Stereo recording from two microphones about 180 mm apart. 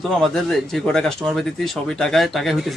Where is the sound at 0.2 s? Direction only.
Centre (ahead or behind).